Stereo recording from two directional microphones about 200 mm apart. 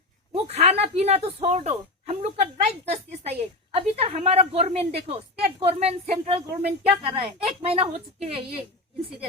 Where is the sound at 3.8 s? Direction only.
30° right (ahead or behind).